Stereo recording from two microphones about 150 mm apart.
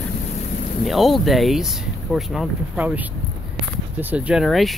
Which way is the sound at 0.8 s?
Centre (ahead or behind).